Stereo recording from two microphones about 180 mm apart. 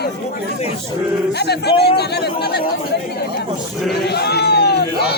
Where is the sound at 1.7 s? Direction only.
65° left (ahead or behind).